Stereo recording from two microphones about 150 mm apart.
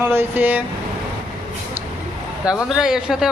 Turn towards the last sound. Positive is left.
turn(degrees=-5)  # may be behind; listen again after turning